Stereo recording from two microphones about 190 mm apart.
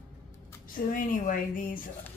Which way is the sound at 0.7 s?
45° left (ahead or behind).